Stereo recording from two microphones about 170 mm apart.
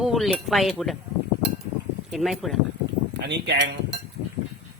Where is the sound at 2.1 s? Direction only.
Centre (ahead or behind).